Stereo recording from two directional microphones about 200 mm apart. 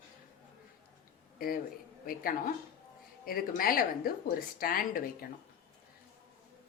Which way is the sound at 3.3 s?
45° left (ahead or behind).